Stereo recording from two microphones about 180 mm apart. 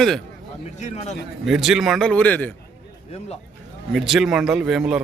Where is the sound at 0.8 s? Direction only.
40° left (ahead or behind).